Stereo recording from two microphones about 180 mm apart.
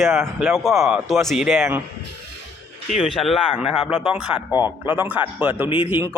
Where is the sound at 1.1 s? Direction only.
Centre (ahead or behind).